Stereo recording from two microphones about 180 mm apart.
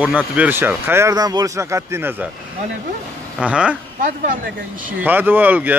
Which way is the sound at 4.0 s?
50° right (ahead or behind).